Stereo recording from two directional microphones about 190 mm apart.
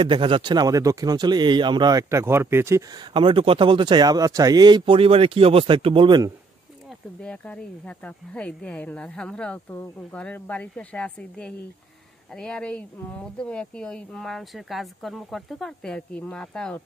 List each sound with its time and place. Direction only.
0.0 s speech: 25° right (ahead or behind)
3.1 s speech: 25° right (ahead or behind)
7.2 s speech: 5° left (ahead or behind)